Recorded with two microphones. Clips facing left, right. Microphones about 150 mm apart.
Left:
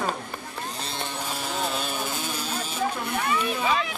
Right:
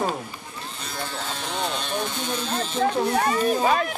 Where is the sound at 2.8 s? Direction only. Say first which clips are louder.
Right 7 dB; 55° right (ahead or behind).